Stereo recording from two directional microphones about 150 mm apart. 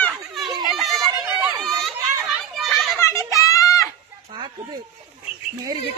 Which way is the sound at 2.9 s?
20° left (ahead or behind).